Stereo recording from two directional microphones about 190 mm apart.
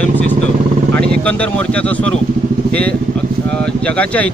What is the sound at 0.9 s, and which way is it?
A man's voice, 5° left (ahead or behind).